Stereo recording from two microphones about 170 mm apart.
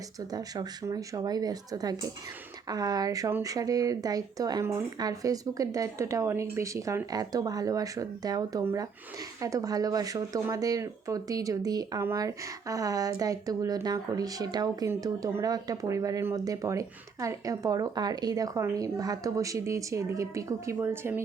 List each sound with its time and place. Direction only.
0.2 s speech: 20° right (ahead or behind)